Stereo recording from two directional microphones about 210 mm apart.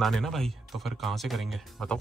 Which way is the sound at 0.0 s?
Centre (ahead or behind).